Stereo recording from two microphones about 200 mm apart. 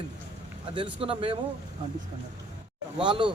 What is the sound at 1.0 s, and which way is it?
Speech, 25° right (ahead or behind).